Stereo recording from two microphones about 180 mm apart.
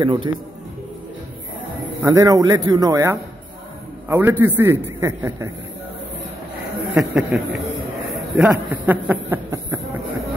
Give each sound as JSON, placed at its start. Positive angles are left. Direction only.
{"t": 0.0, "sound": "speech", "side_deg": -25}
{"t": 2.0, "sound": "a man's voice", "side_deg": -20}
{"t": 7.0, "sound": "a man's voice", "side_deg": 0}